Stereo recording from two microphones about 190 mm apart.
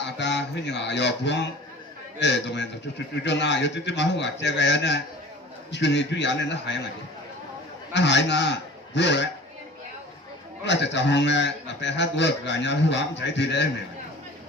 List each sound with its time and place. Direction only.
0.2 s a man's voice: 65° left (ahead or behind)
7.9 s a man's voice: 65° left (ahead or behind)
10.6 s a man's voice: 65° left (ahead or behind)